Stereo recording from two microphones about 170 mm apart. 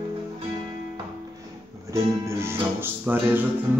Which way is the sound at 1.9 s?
15° right (ahead or behind).